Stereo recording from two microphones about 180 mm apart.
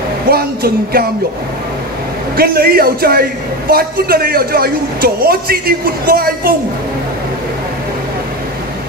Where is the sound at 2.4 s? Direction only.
60° right (ahead or behind).